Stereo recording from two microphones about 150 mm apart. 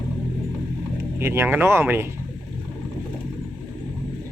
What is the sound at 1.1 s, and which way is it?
Speech, 15° right (ahead or behind).